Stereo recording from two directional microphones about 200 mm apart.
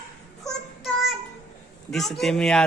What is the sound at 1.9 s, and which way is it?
Speech, centre (ahead or behind).